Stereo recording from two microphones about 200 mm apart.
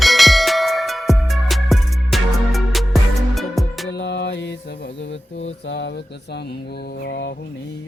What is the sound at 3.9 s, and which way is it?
Mantra, 60° left (ahead or behind).